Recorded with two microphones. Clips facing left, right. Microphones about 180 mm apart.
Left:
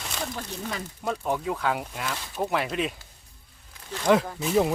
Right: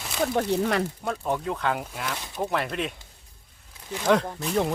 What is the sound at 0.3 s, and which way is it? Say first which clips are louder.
Speech: right 11 dB; 70° right (ahead or behind).